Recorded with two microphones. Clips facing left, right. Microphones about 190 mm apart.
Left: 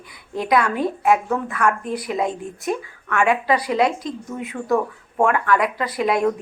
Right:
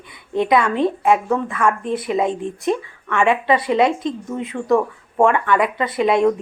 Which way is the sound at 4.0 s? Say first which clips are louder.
Right 4 dB; 25° right (ahead or behind).